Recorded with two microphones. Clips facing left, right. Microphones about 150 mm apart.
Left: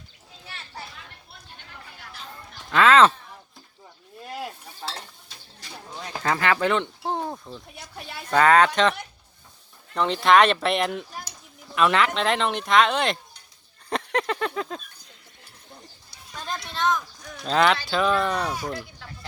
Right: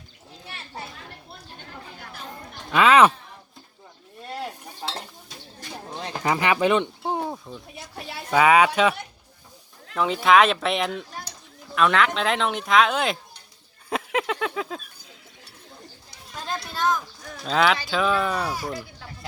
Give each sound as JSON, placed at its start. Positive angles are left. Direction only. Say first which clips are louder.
{"t": 2.0, "sound": "chatter", "louder": "right 1 dB", "side_deg": -45}
{"t": 2.7, "sound": "speech", "louder": "even", "side_deg": -15}
{"t": 4.8, "sound": "stir", "louder": "right 2 dB", "side_deg": -20}
{"t": 5.8, "sound": "a sound", "louder": "right 3 dB", "side_deg": -30}
{"t": 6.2, "sound": "speech", "louder": "right 2 dB", "side_deg": -15}
{"t": 7.1, "sound": "a sound", "louder": "left 1 dB", "side_deg": -5}
{"t": 9.9, "sound": "speech", "louder": "even", "side_deg": -5}
{"t": 13.9, "sound": "a sound", "louder": "even", "side_deg": -5}
{"t": 16.3, "sound": "speech", "louder": "right 1 dB", "side_deg": -5}